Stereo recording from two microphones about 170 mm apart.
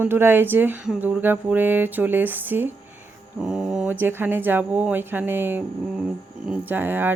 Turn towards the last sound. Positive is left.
turn(degrees=-10)  # may be behind; listen again after turning